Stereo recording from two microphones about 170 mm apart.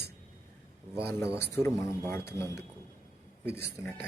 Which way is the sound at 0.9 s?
15° left (ahead or behind).